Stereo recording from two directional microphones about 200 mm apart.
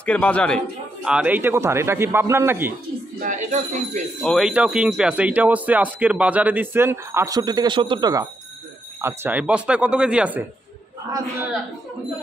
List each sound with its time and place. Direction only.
0.0 s a man's voice: 5° left (ahead or behind)
1.0 s speech: 5° right (ahead or behind)
3.2 s a sound: 35° right (ahead or behind)
4.2 s speech: centre (ahead or behind)